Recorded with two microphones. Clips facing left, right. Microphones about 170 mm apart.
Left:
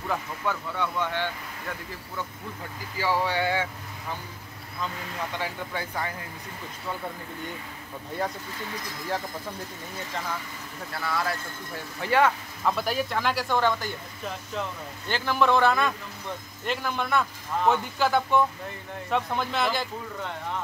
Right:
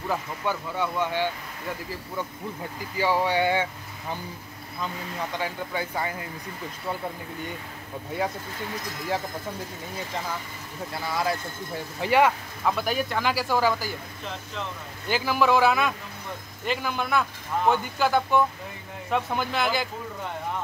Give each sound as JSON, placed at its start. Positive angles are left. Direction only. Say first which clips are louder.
{"t": 0.7, "sound": "speech", "louder": "right 2 dB", "side_deg": -10}
{"t": 3.0, "sound": "speech", "louder": "right 3 dB", "side_deg": -15}
{"t": 5.4, "sound": "speech", "louder": "right 2 dB", "side_deg": -5}
{"t": 10.9, "sound": "speech", "louder": "right 2 dB", "side_deg": -15}
{"t": 12.6, "sound": "speech", "louder": "right 1 dB", "side_deg": 0}
{"t": 15.0, "sound": "speech", "louder": "right 1 dB", "side_deg": -5}